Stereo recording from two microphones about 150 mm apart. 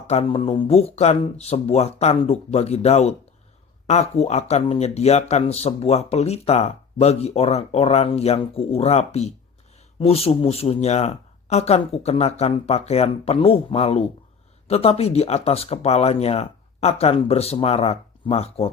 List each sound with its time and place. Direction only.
0.1 s speech: 40° left (ahead or behind)